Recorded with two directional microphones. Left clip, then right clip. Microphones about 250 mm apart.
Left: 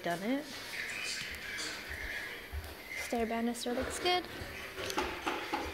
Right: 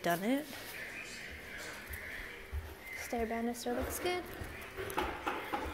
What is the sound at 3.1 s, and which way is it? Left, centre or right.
Speech, left.